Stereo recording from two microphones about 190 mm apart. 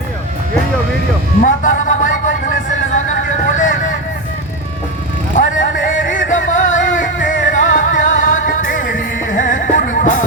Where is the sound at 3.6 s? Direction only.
45° left (ahead or behind).